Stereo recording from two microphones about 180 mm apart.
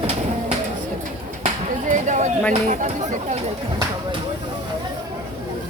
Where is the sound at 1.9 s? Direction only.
40° right (ahead or behind).